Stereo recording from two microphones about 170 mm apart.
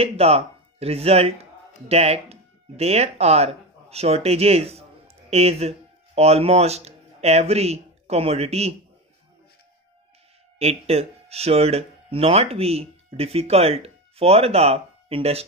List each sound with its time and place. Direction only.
0.0 s speech: 35° right (ahead or behind)
10.6 s speech: 35° right (ahead or behind)